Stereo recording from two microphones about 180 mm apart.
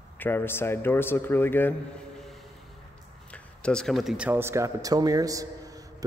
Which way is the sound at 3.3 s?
5° left (ahead or behind).